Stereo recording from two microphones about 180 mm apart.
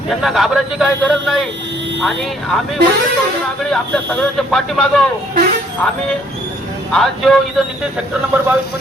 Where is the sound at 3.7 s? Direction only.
5° left (ahead or behind).